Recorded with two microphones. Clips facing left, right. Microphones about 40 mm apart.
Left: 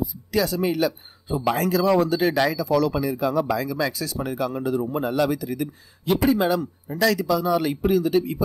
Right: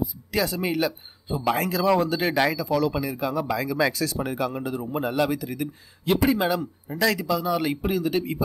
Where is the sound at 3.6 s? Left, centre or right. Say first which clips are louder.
Right 2 dB; right.